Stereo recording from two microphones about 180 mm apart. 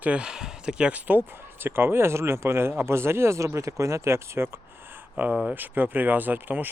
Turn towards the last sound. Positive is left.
turn(degrees=-10)  # may be behind; listen again after turning